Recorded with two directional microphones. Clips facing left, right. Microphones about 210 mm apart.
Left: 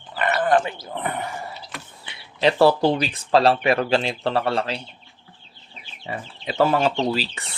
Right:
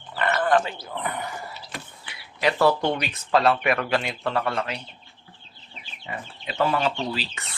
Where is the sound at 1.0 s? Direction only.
25° left (ahead or behind).